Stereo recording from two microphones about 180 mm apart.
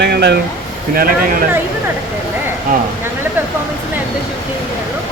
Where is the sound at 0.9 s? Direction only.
55° right (ahead or behind).